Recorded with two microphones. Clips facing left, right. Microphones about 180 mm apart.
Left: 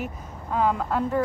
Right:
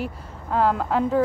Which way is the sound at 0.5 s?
Centre (ahead or behind).